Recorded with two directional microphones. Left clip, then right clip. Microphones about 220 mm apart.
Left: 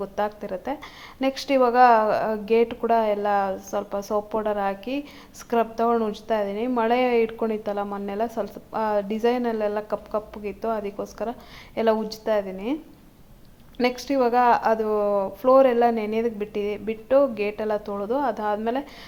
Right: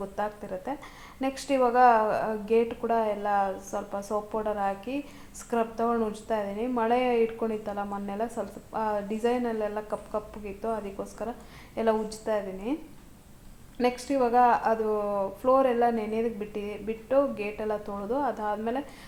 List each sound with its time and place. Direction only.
0.0 s speech: 30° left (ahead or behind)
13.7 s speech: 25° left (ahead or behind)